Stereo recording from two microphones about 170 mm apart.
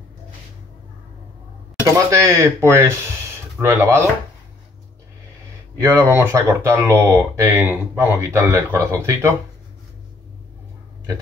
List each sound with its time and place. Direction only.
2.0 s speech: 20° right (ahead or behind)
5.8 s speech: 15° right (ahead or behind)